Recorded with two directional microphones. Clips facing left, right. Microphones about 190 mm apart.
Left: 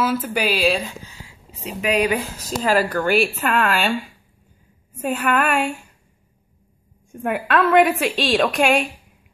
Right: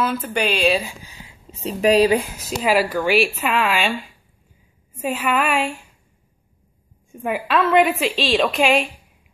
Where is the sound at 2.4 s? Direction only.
10° right (ahead or behind).